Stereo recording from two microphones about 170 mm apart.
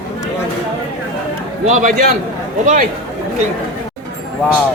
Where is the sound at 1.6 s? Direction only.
45° right (ahead or behind).